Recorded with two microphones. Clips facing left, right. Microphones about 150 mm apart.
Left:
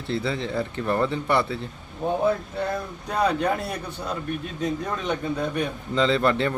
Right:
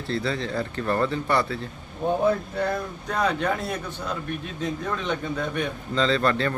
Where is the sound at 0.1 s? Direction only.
20° left (ahead or behind).